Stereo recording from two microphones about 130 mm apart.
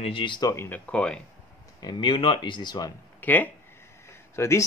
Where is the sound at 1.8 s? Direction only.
35° left (ahead or behind).